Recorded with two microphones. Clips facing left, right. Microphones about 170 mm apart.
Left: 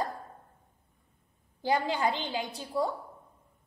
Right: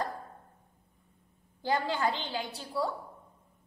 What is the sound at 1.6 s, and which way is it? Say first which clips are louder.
A woman's voice: left 2 dB; 15° left (ahead or behind).